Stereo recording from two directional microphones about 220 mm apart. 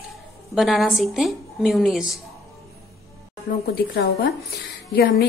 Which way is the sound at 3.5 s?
45° left (ahead or behind).